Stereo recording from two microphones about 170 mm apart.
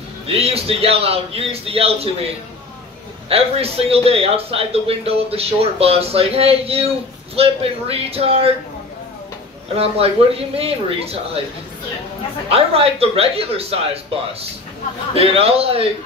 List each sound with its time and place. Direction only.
0.3 s a man's voice: 35° right (ahead or behind)
3.3 s a man's voice: 35° right (ahead or behind)
9.8 s a man's voice: 35° right (ahead or behind)
12.4 s a man's voice: 35° right (ahead or behind)
15.1 s a man's voice: 35° right (ahead or behind)